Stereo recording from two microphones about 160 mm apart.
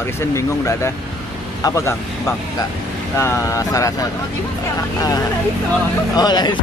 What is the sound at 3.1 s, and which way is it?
Speech, 15° left (ahead or behind).